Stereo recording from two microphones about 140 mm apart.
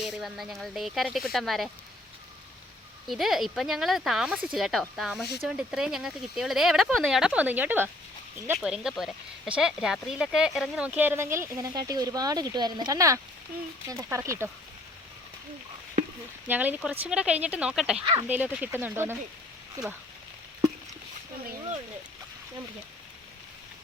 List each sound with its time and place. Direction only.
0.0 s speech: centre (ahead or behind)
3.1 s speech: centre (ahead or behind); by 14.5 s 20° right (ahead or behind)
16.5 s speech: 10° right (ahead or behind)
18.0 s speech: 35° right (ahead or behind)
18.3 s speech: 10° right (ahead or behind)